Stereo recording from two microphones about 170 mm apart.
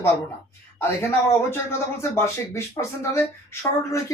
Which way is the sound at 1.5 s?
15° left (ahead or behind).